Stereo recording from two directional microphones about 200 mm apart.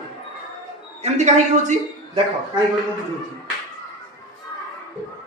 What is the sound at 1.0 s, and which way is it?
Speech, 35° right (ahead or behind).